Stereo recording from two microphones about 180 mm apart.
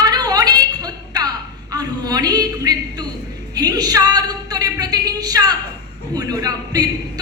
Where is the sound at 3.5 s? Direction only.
20° right (ahead or behind).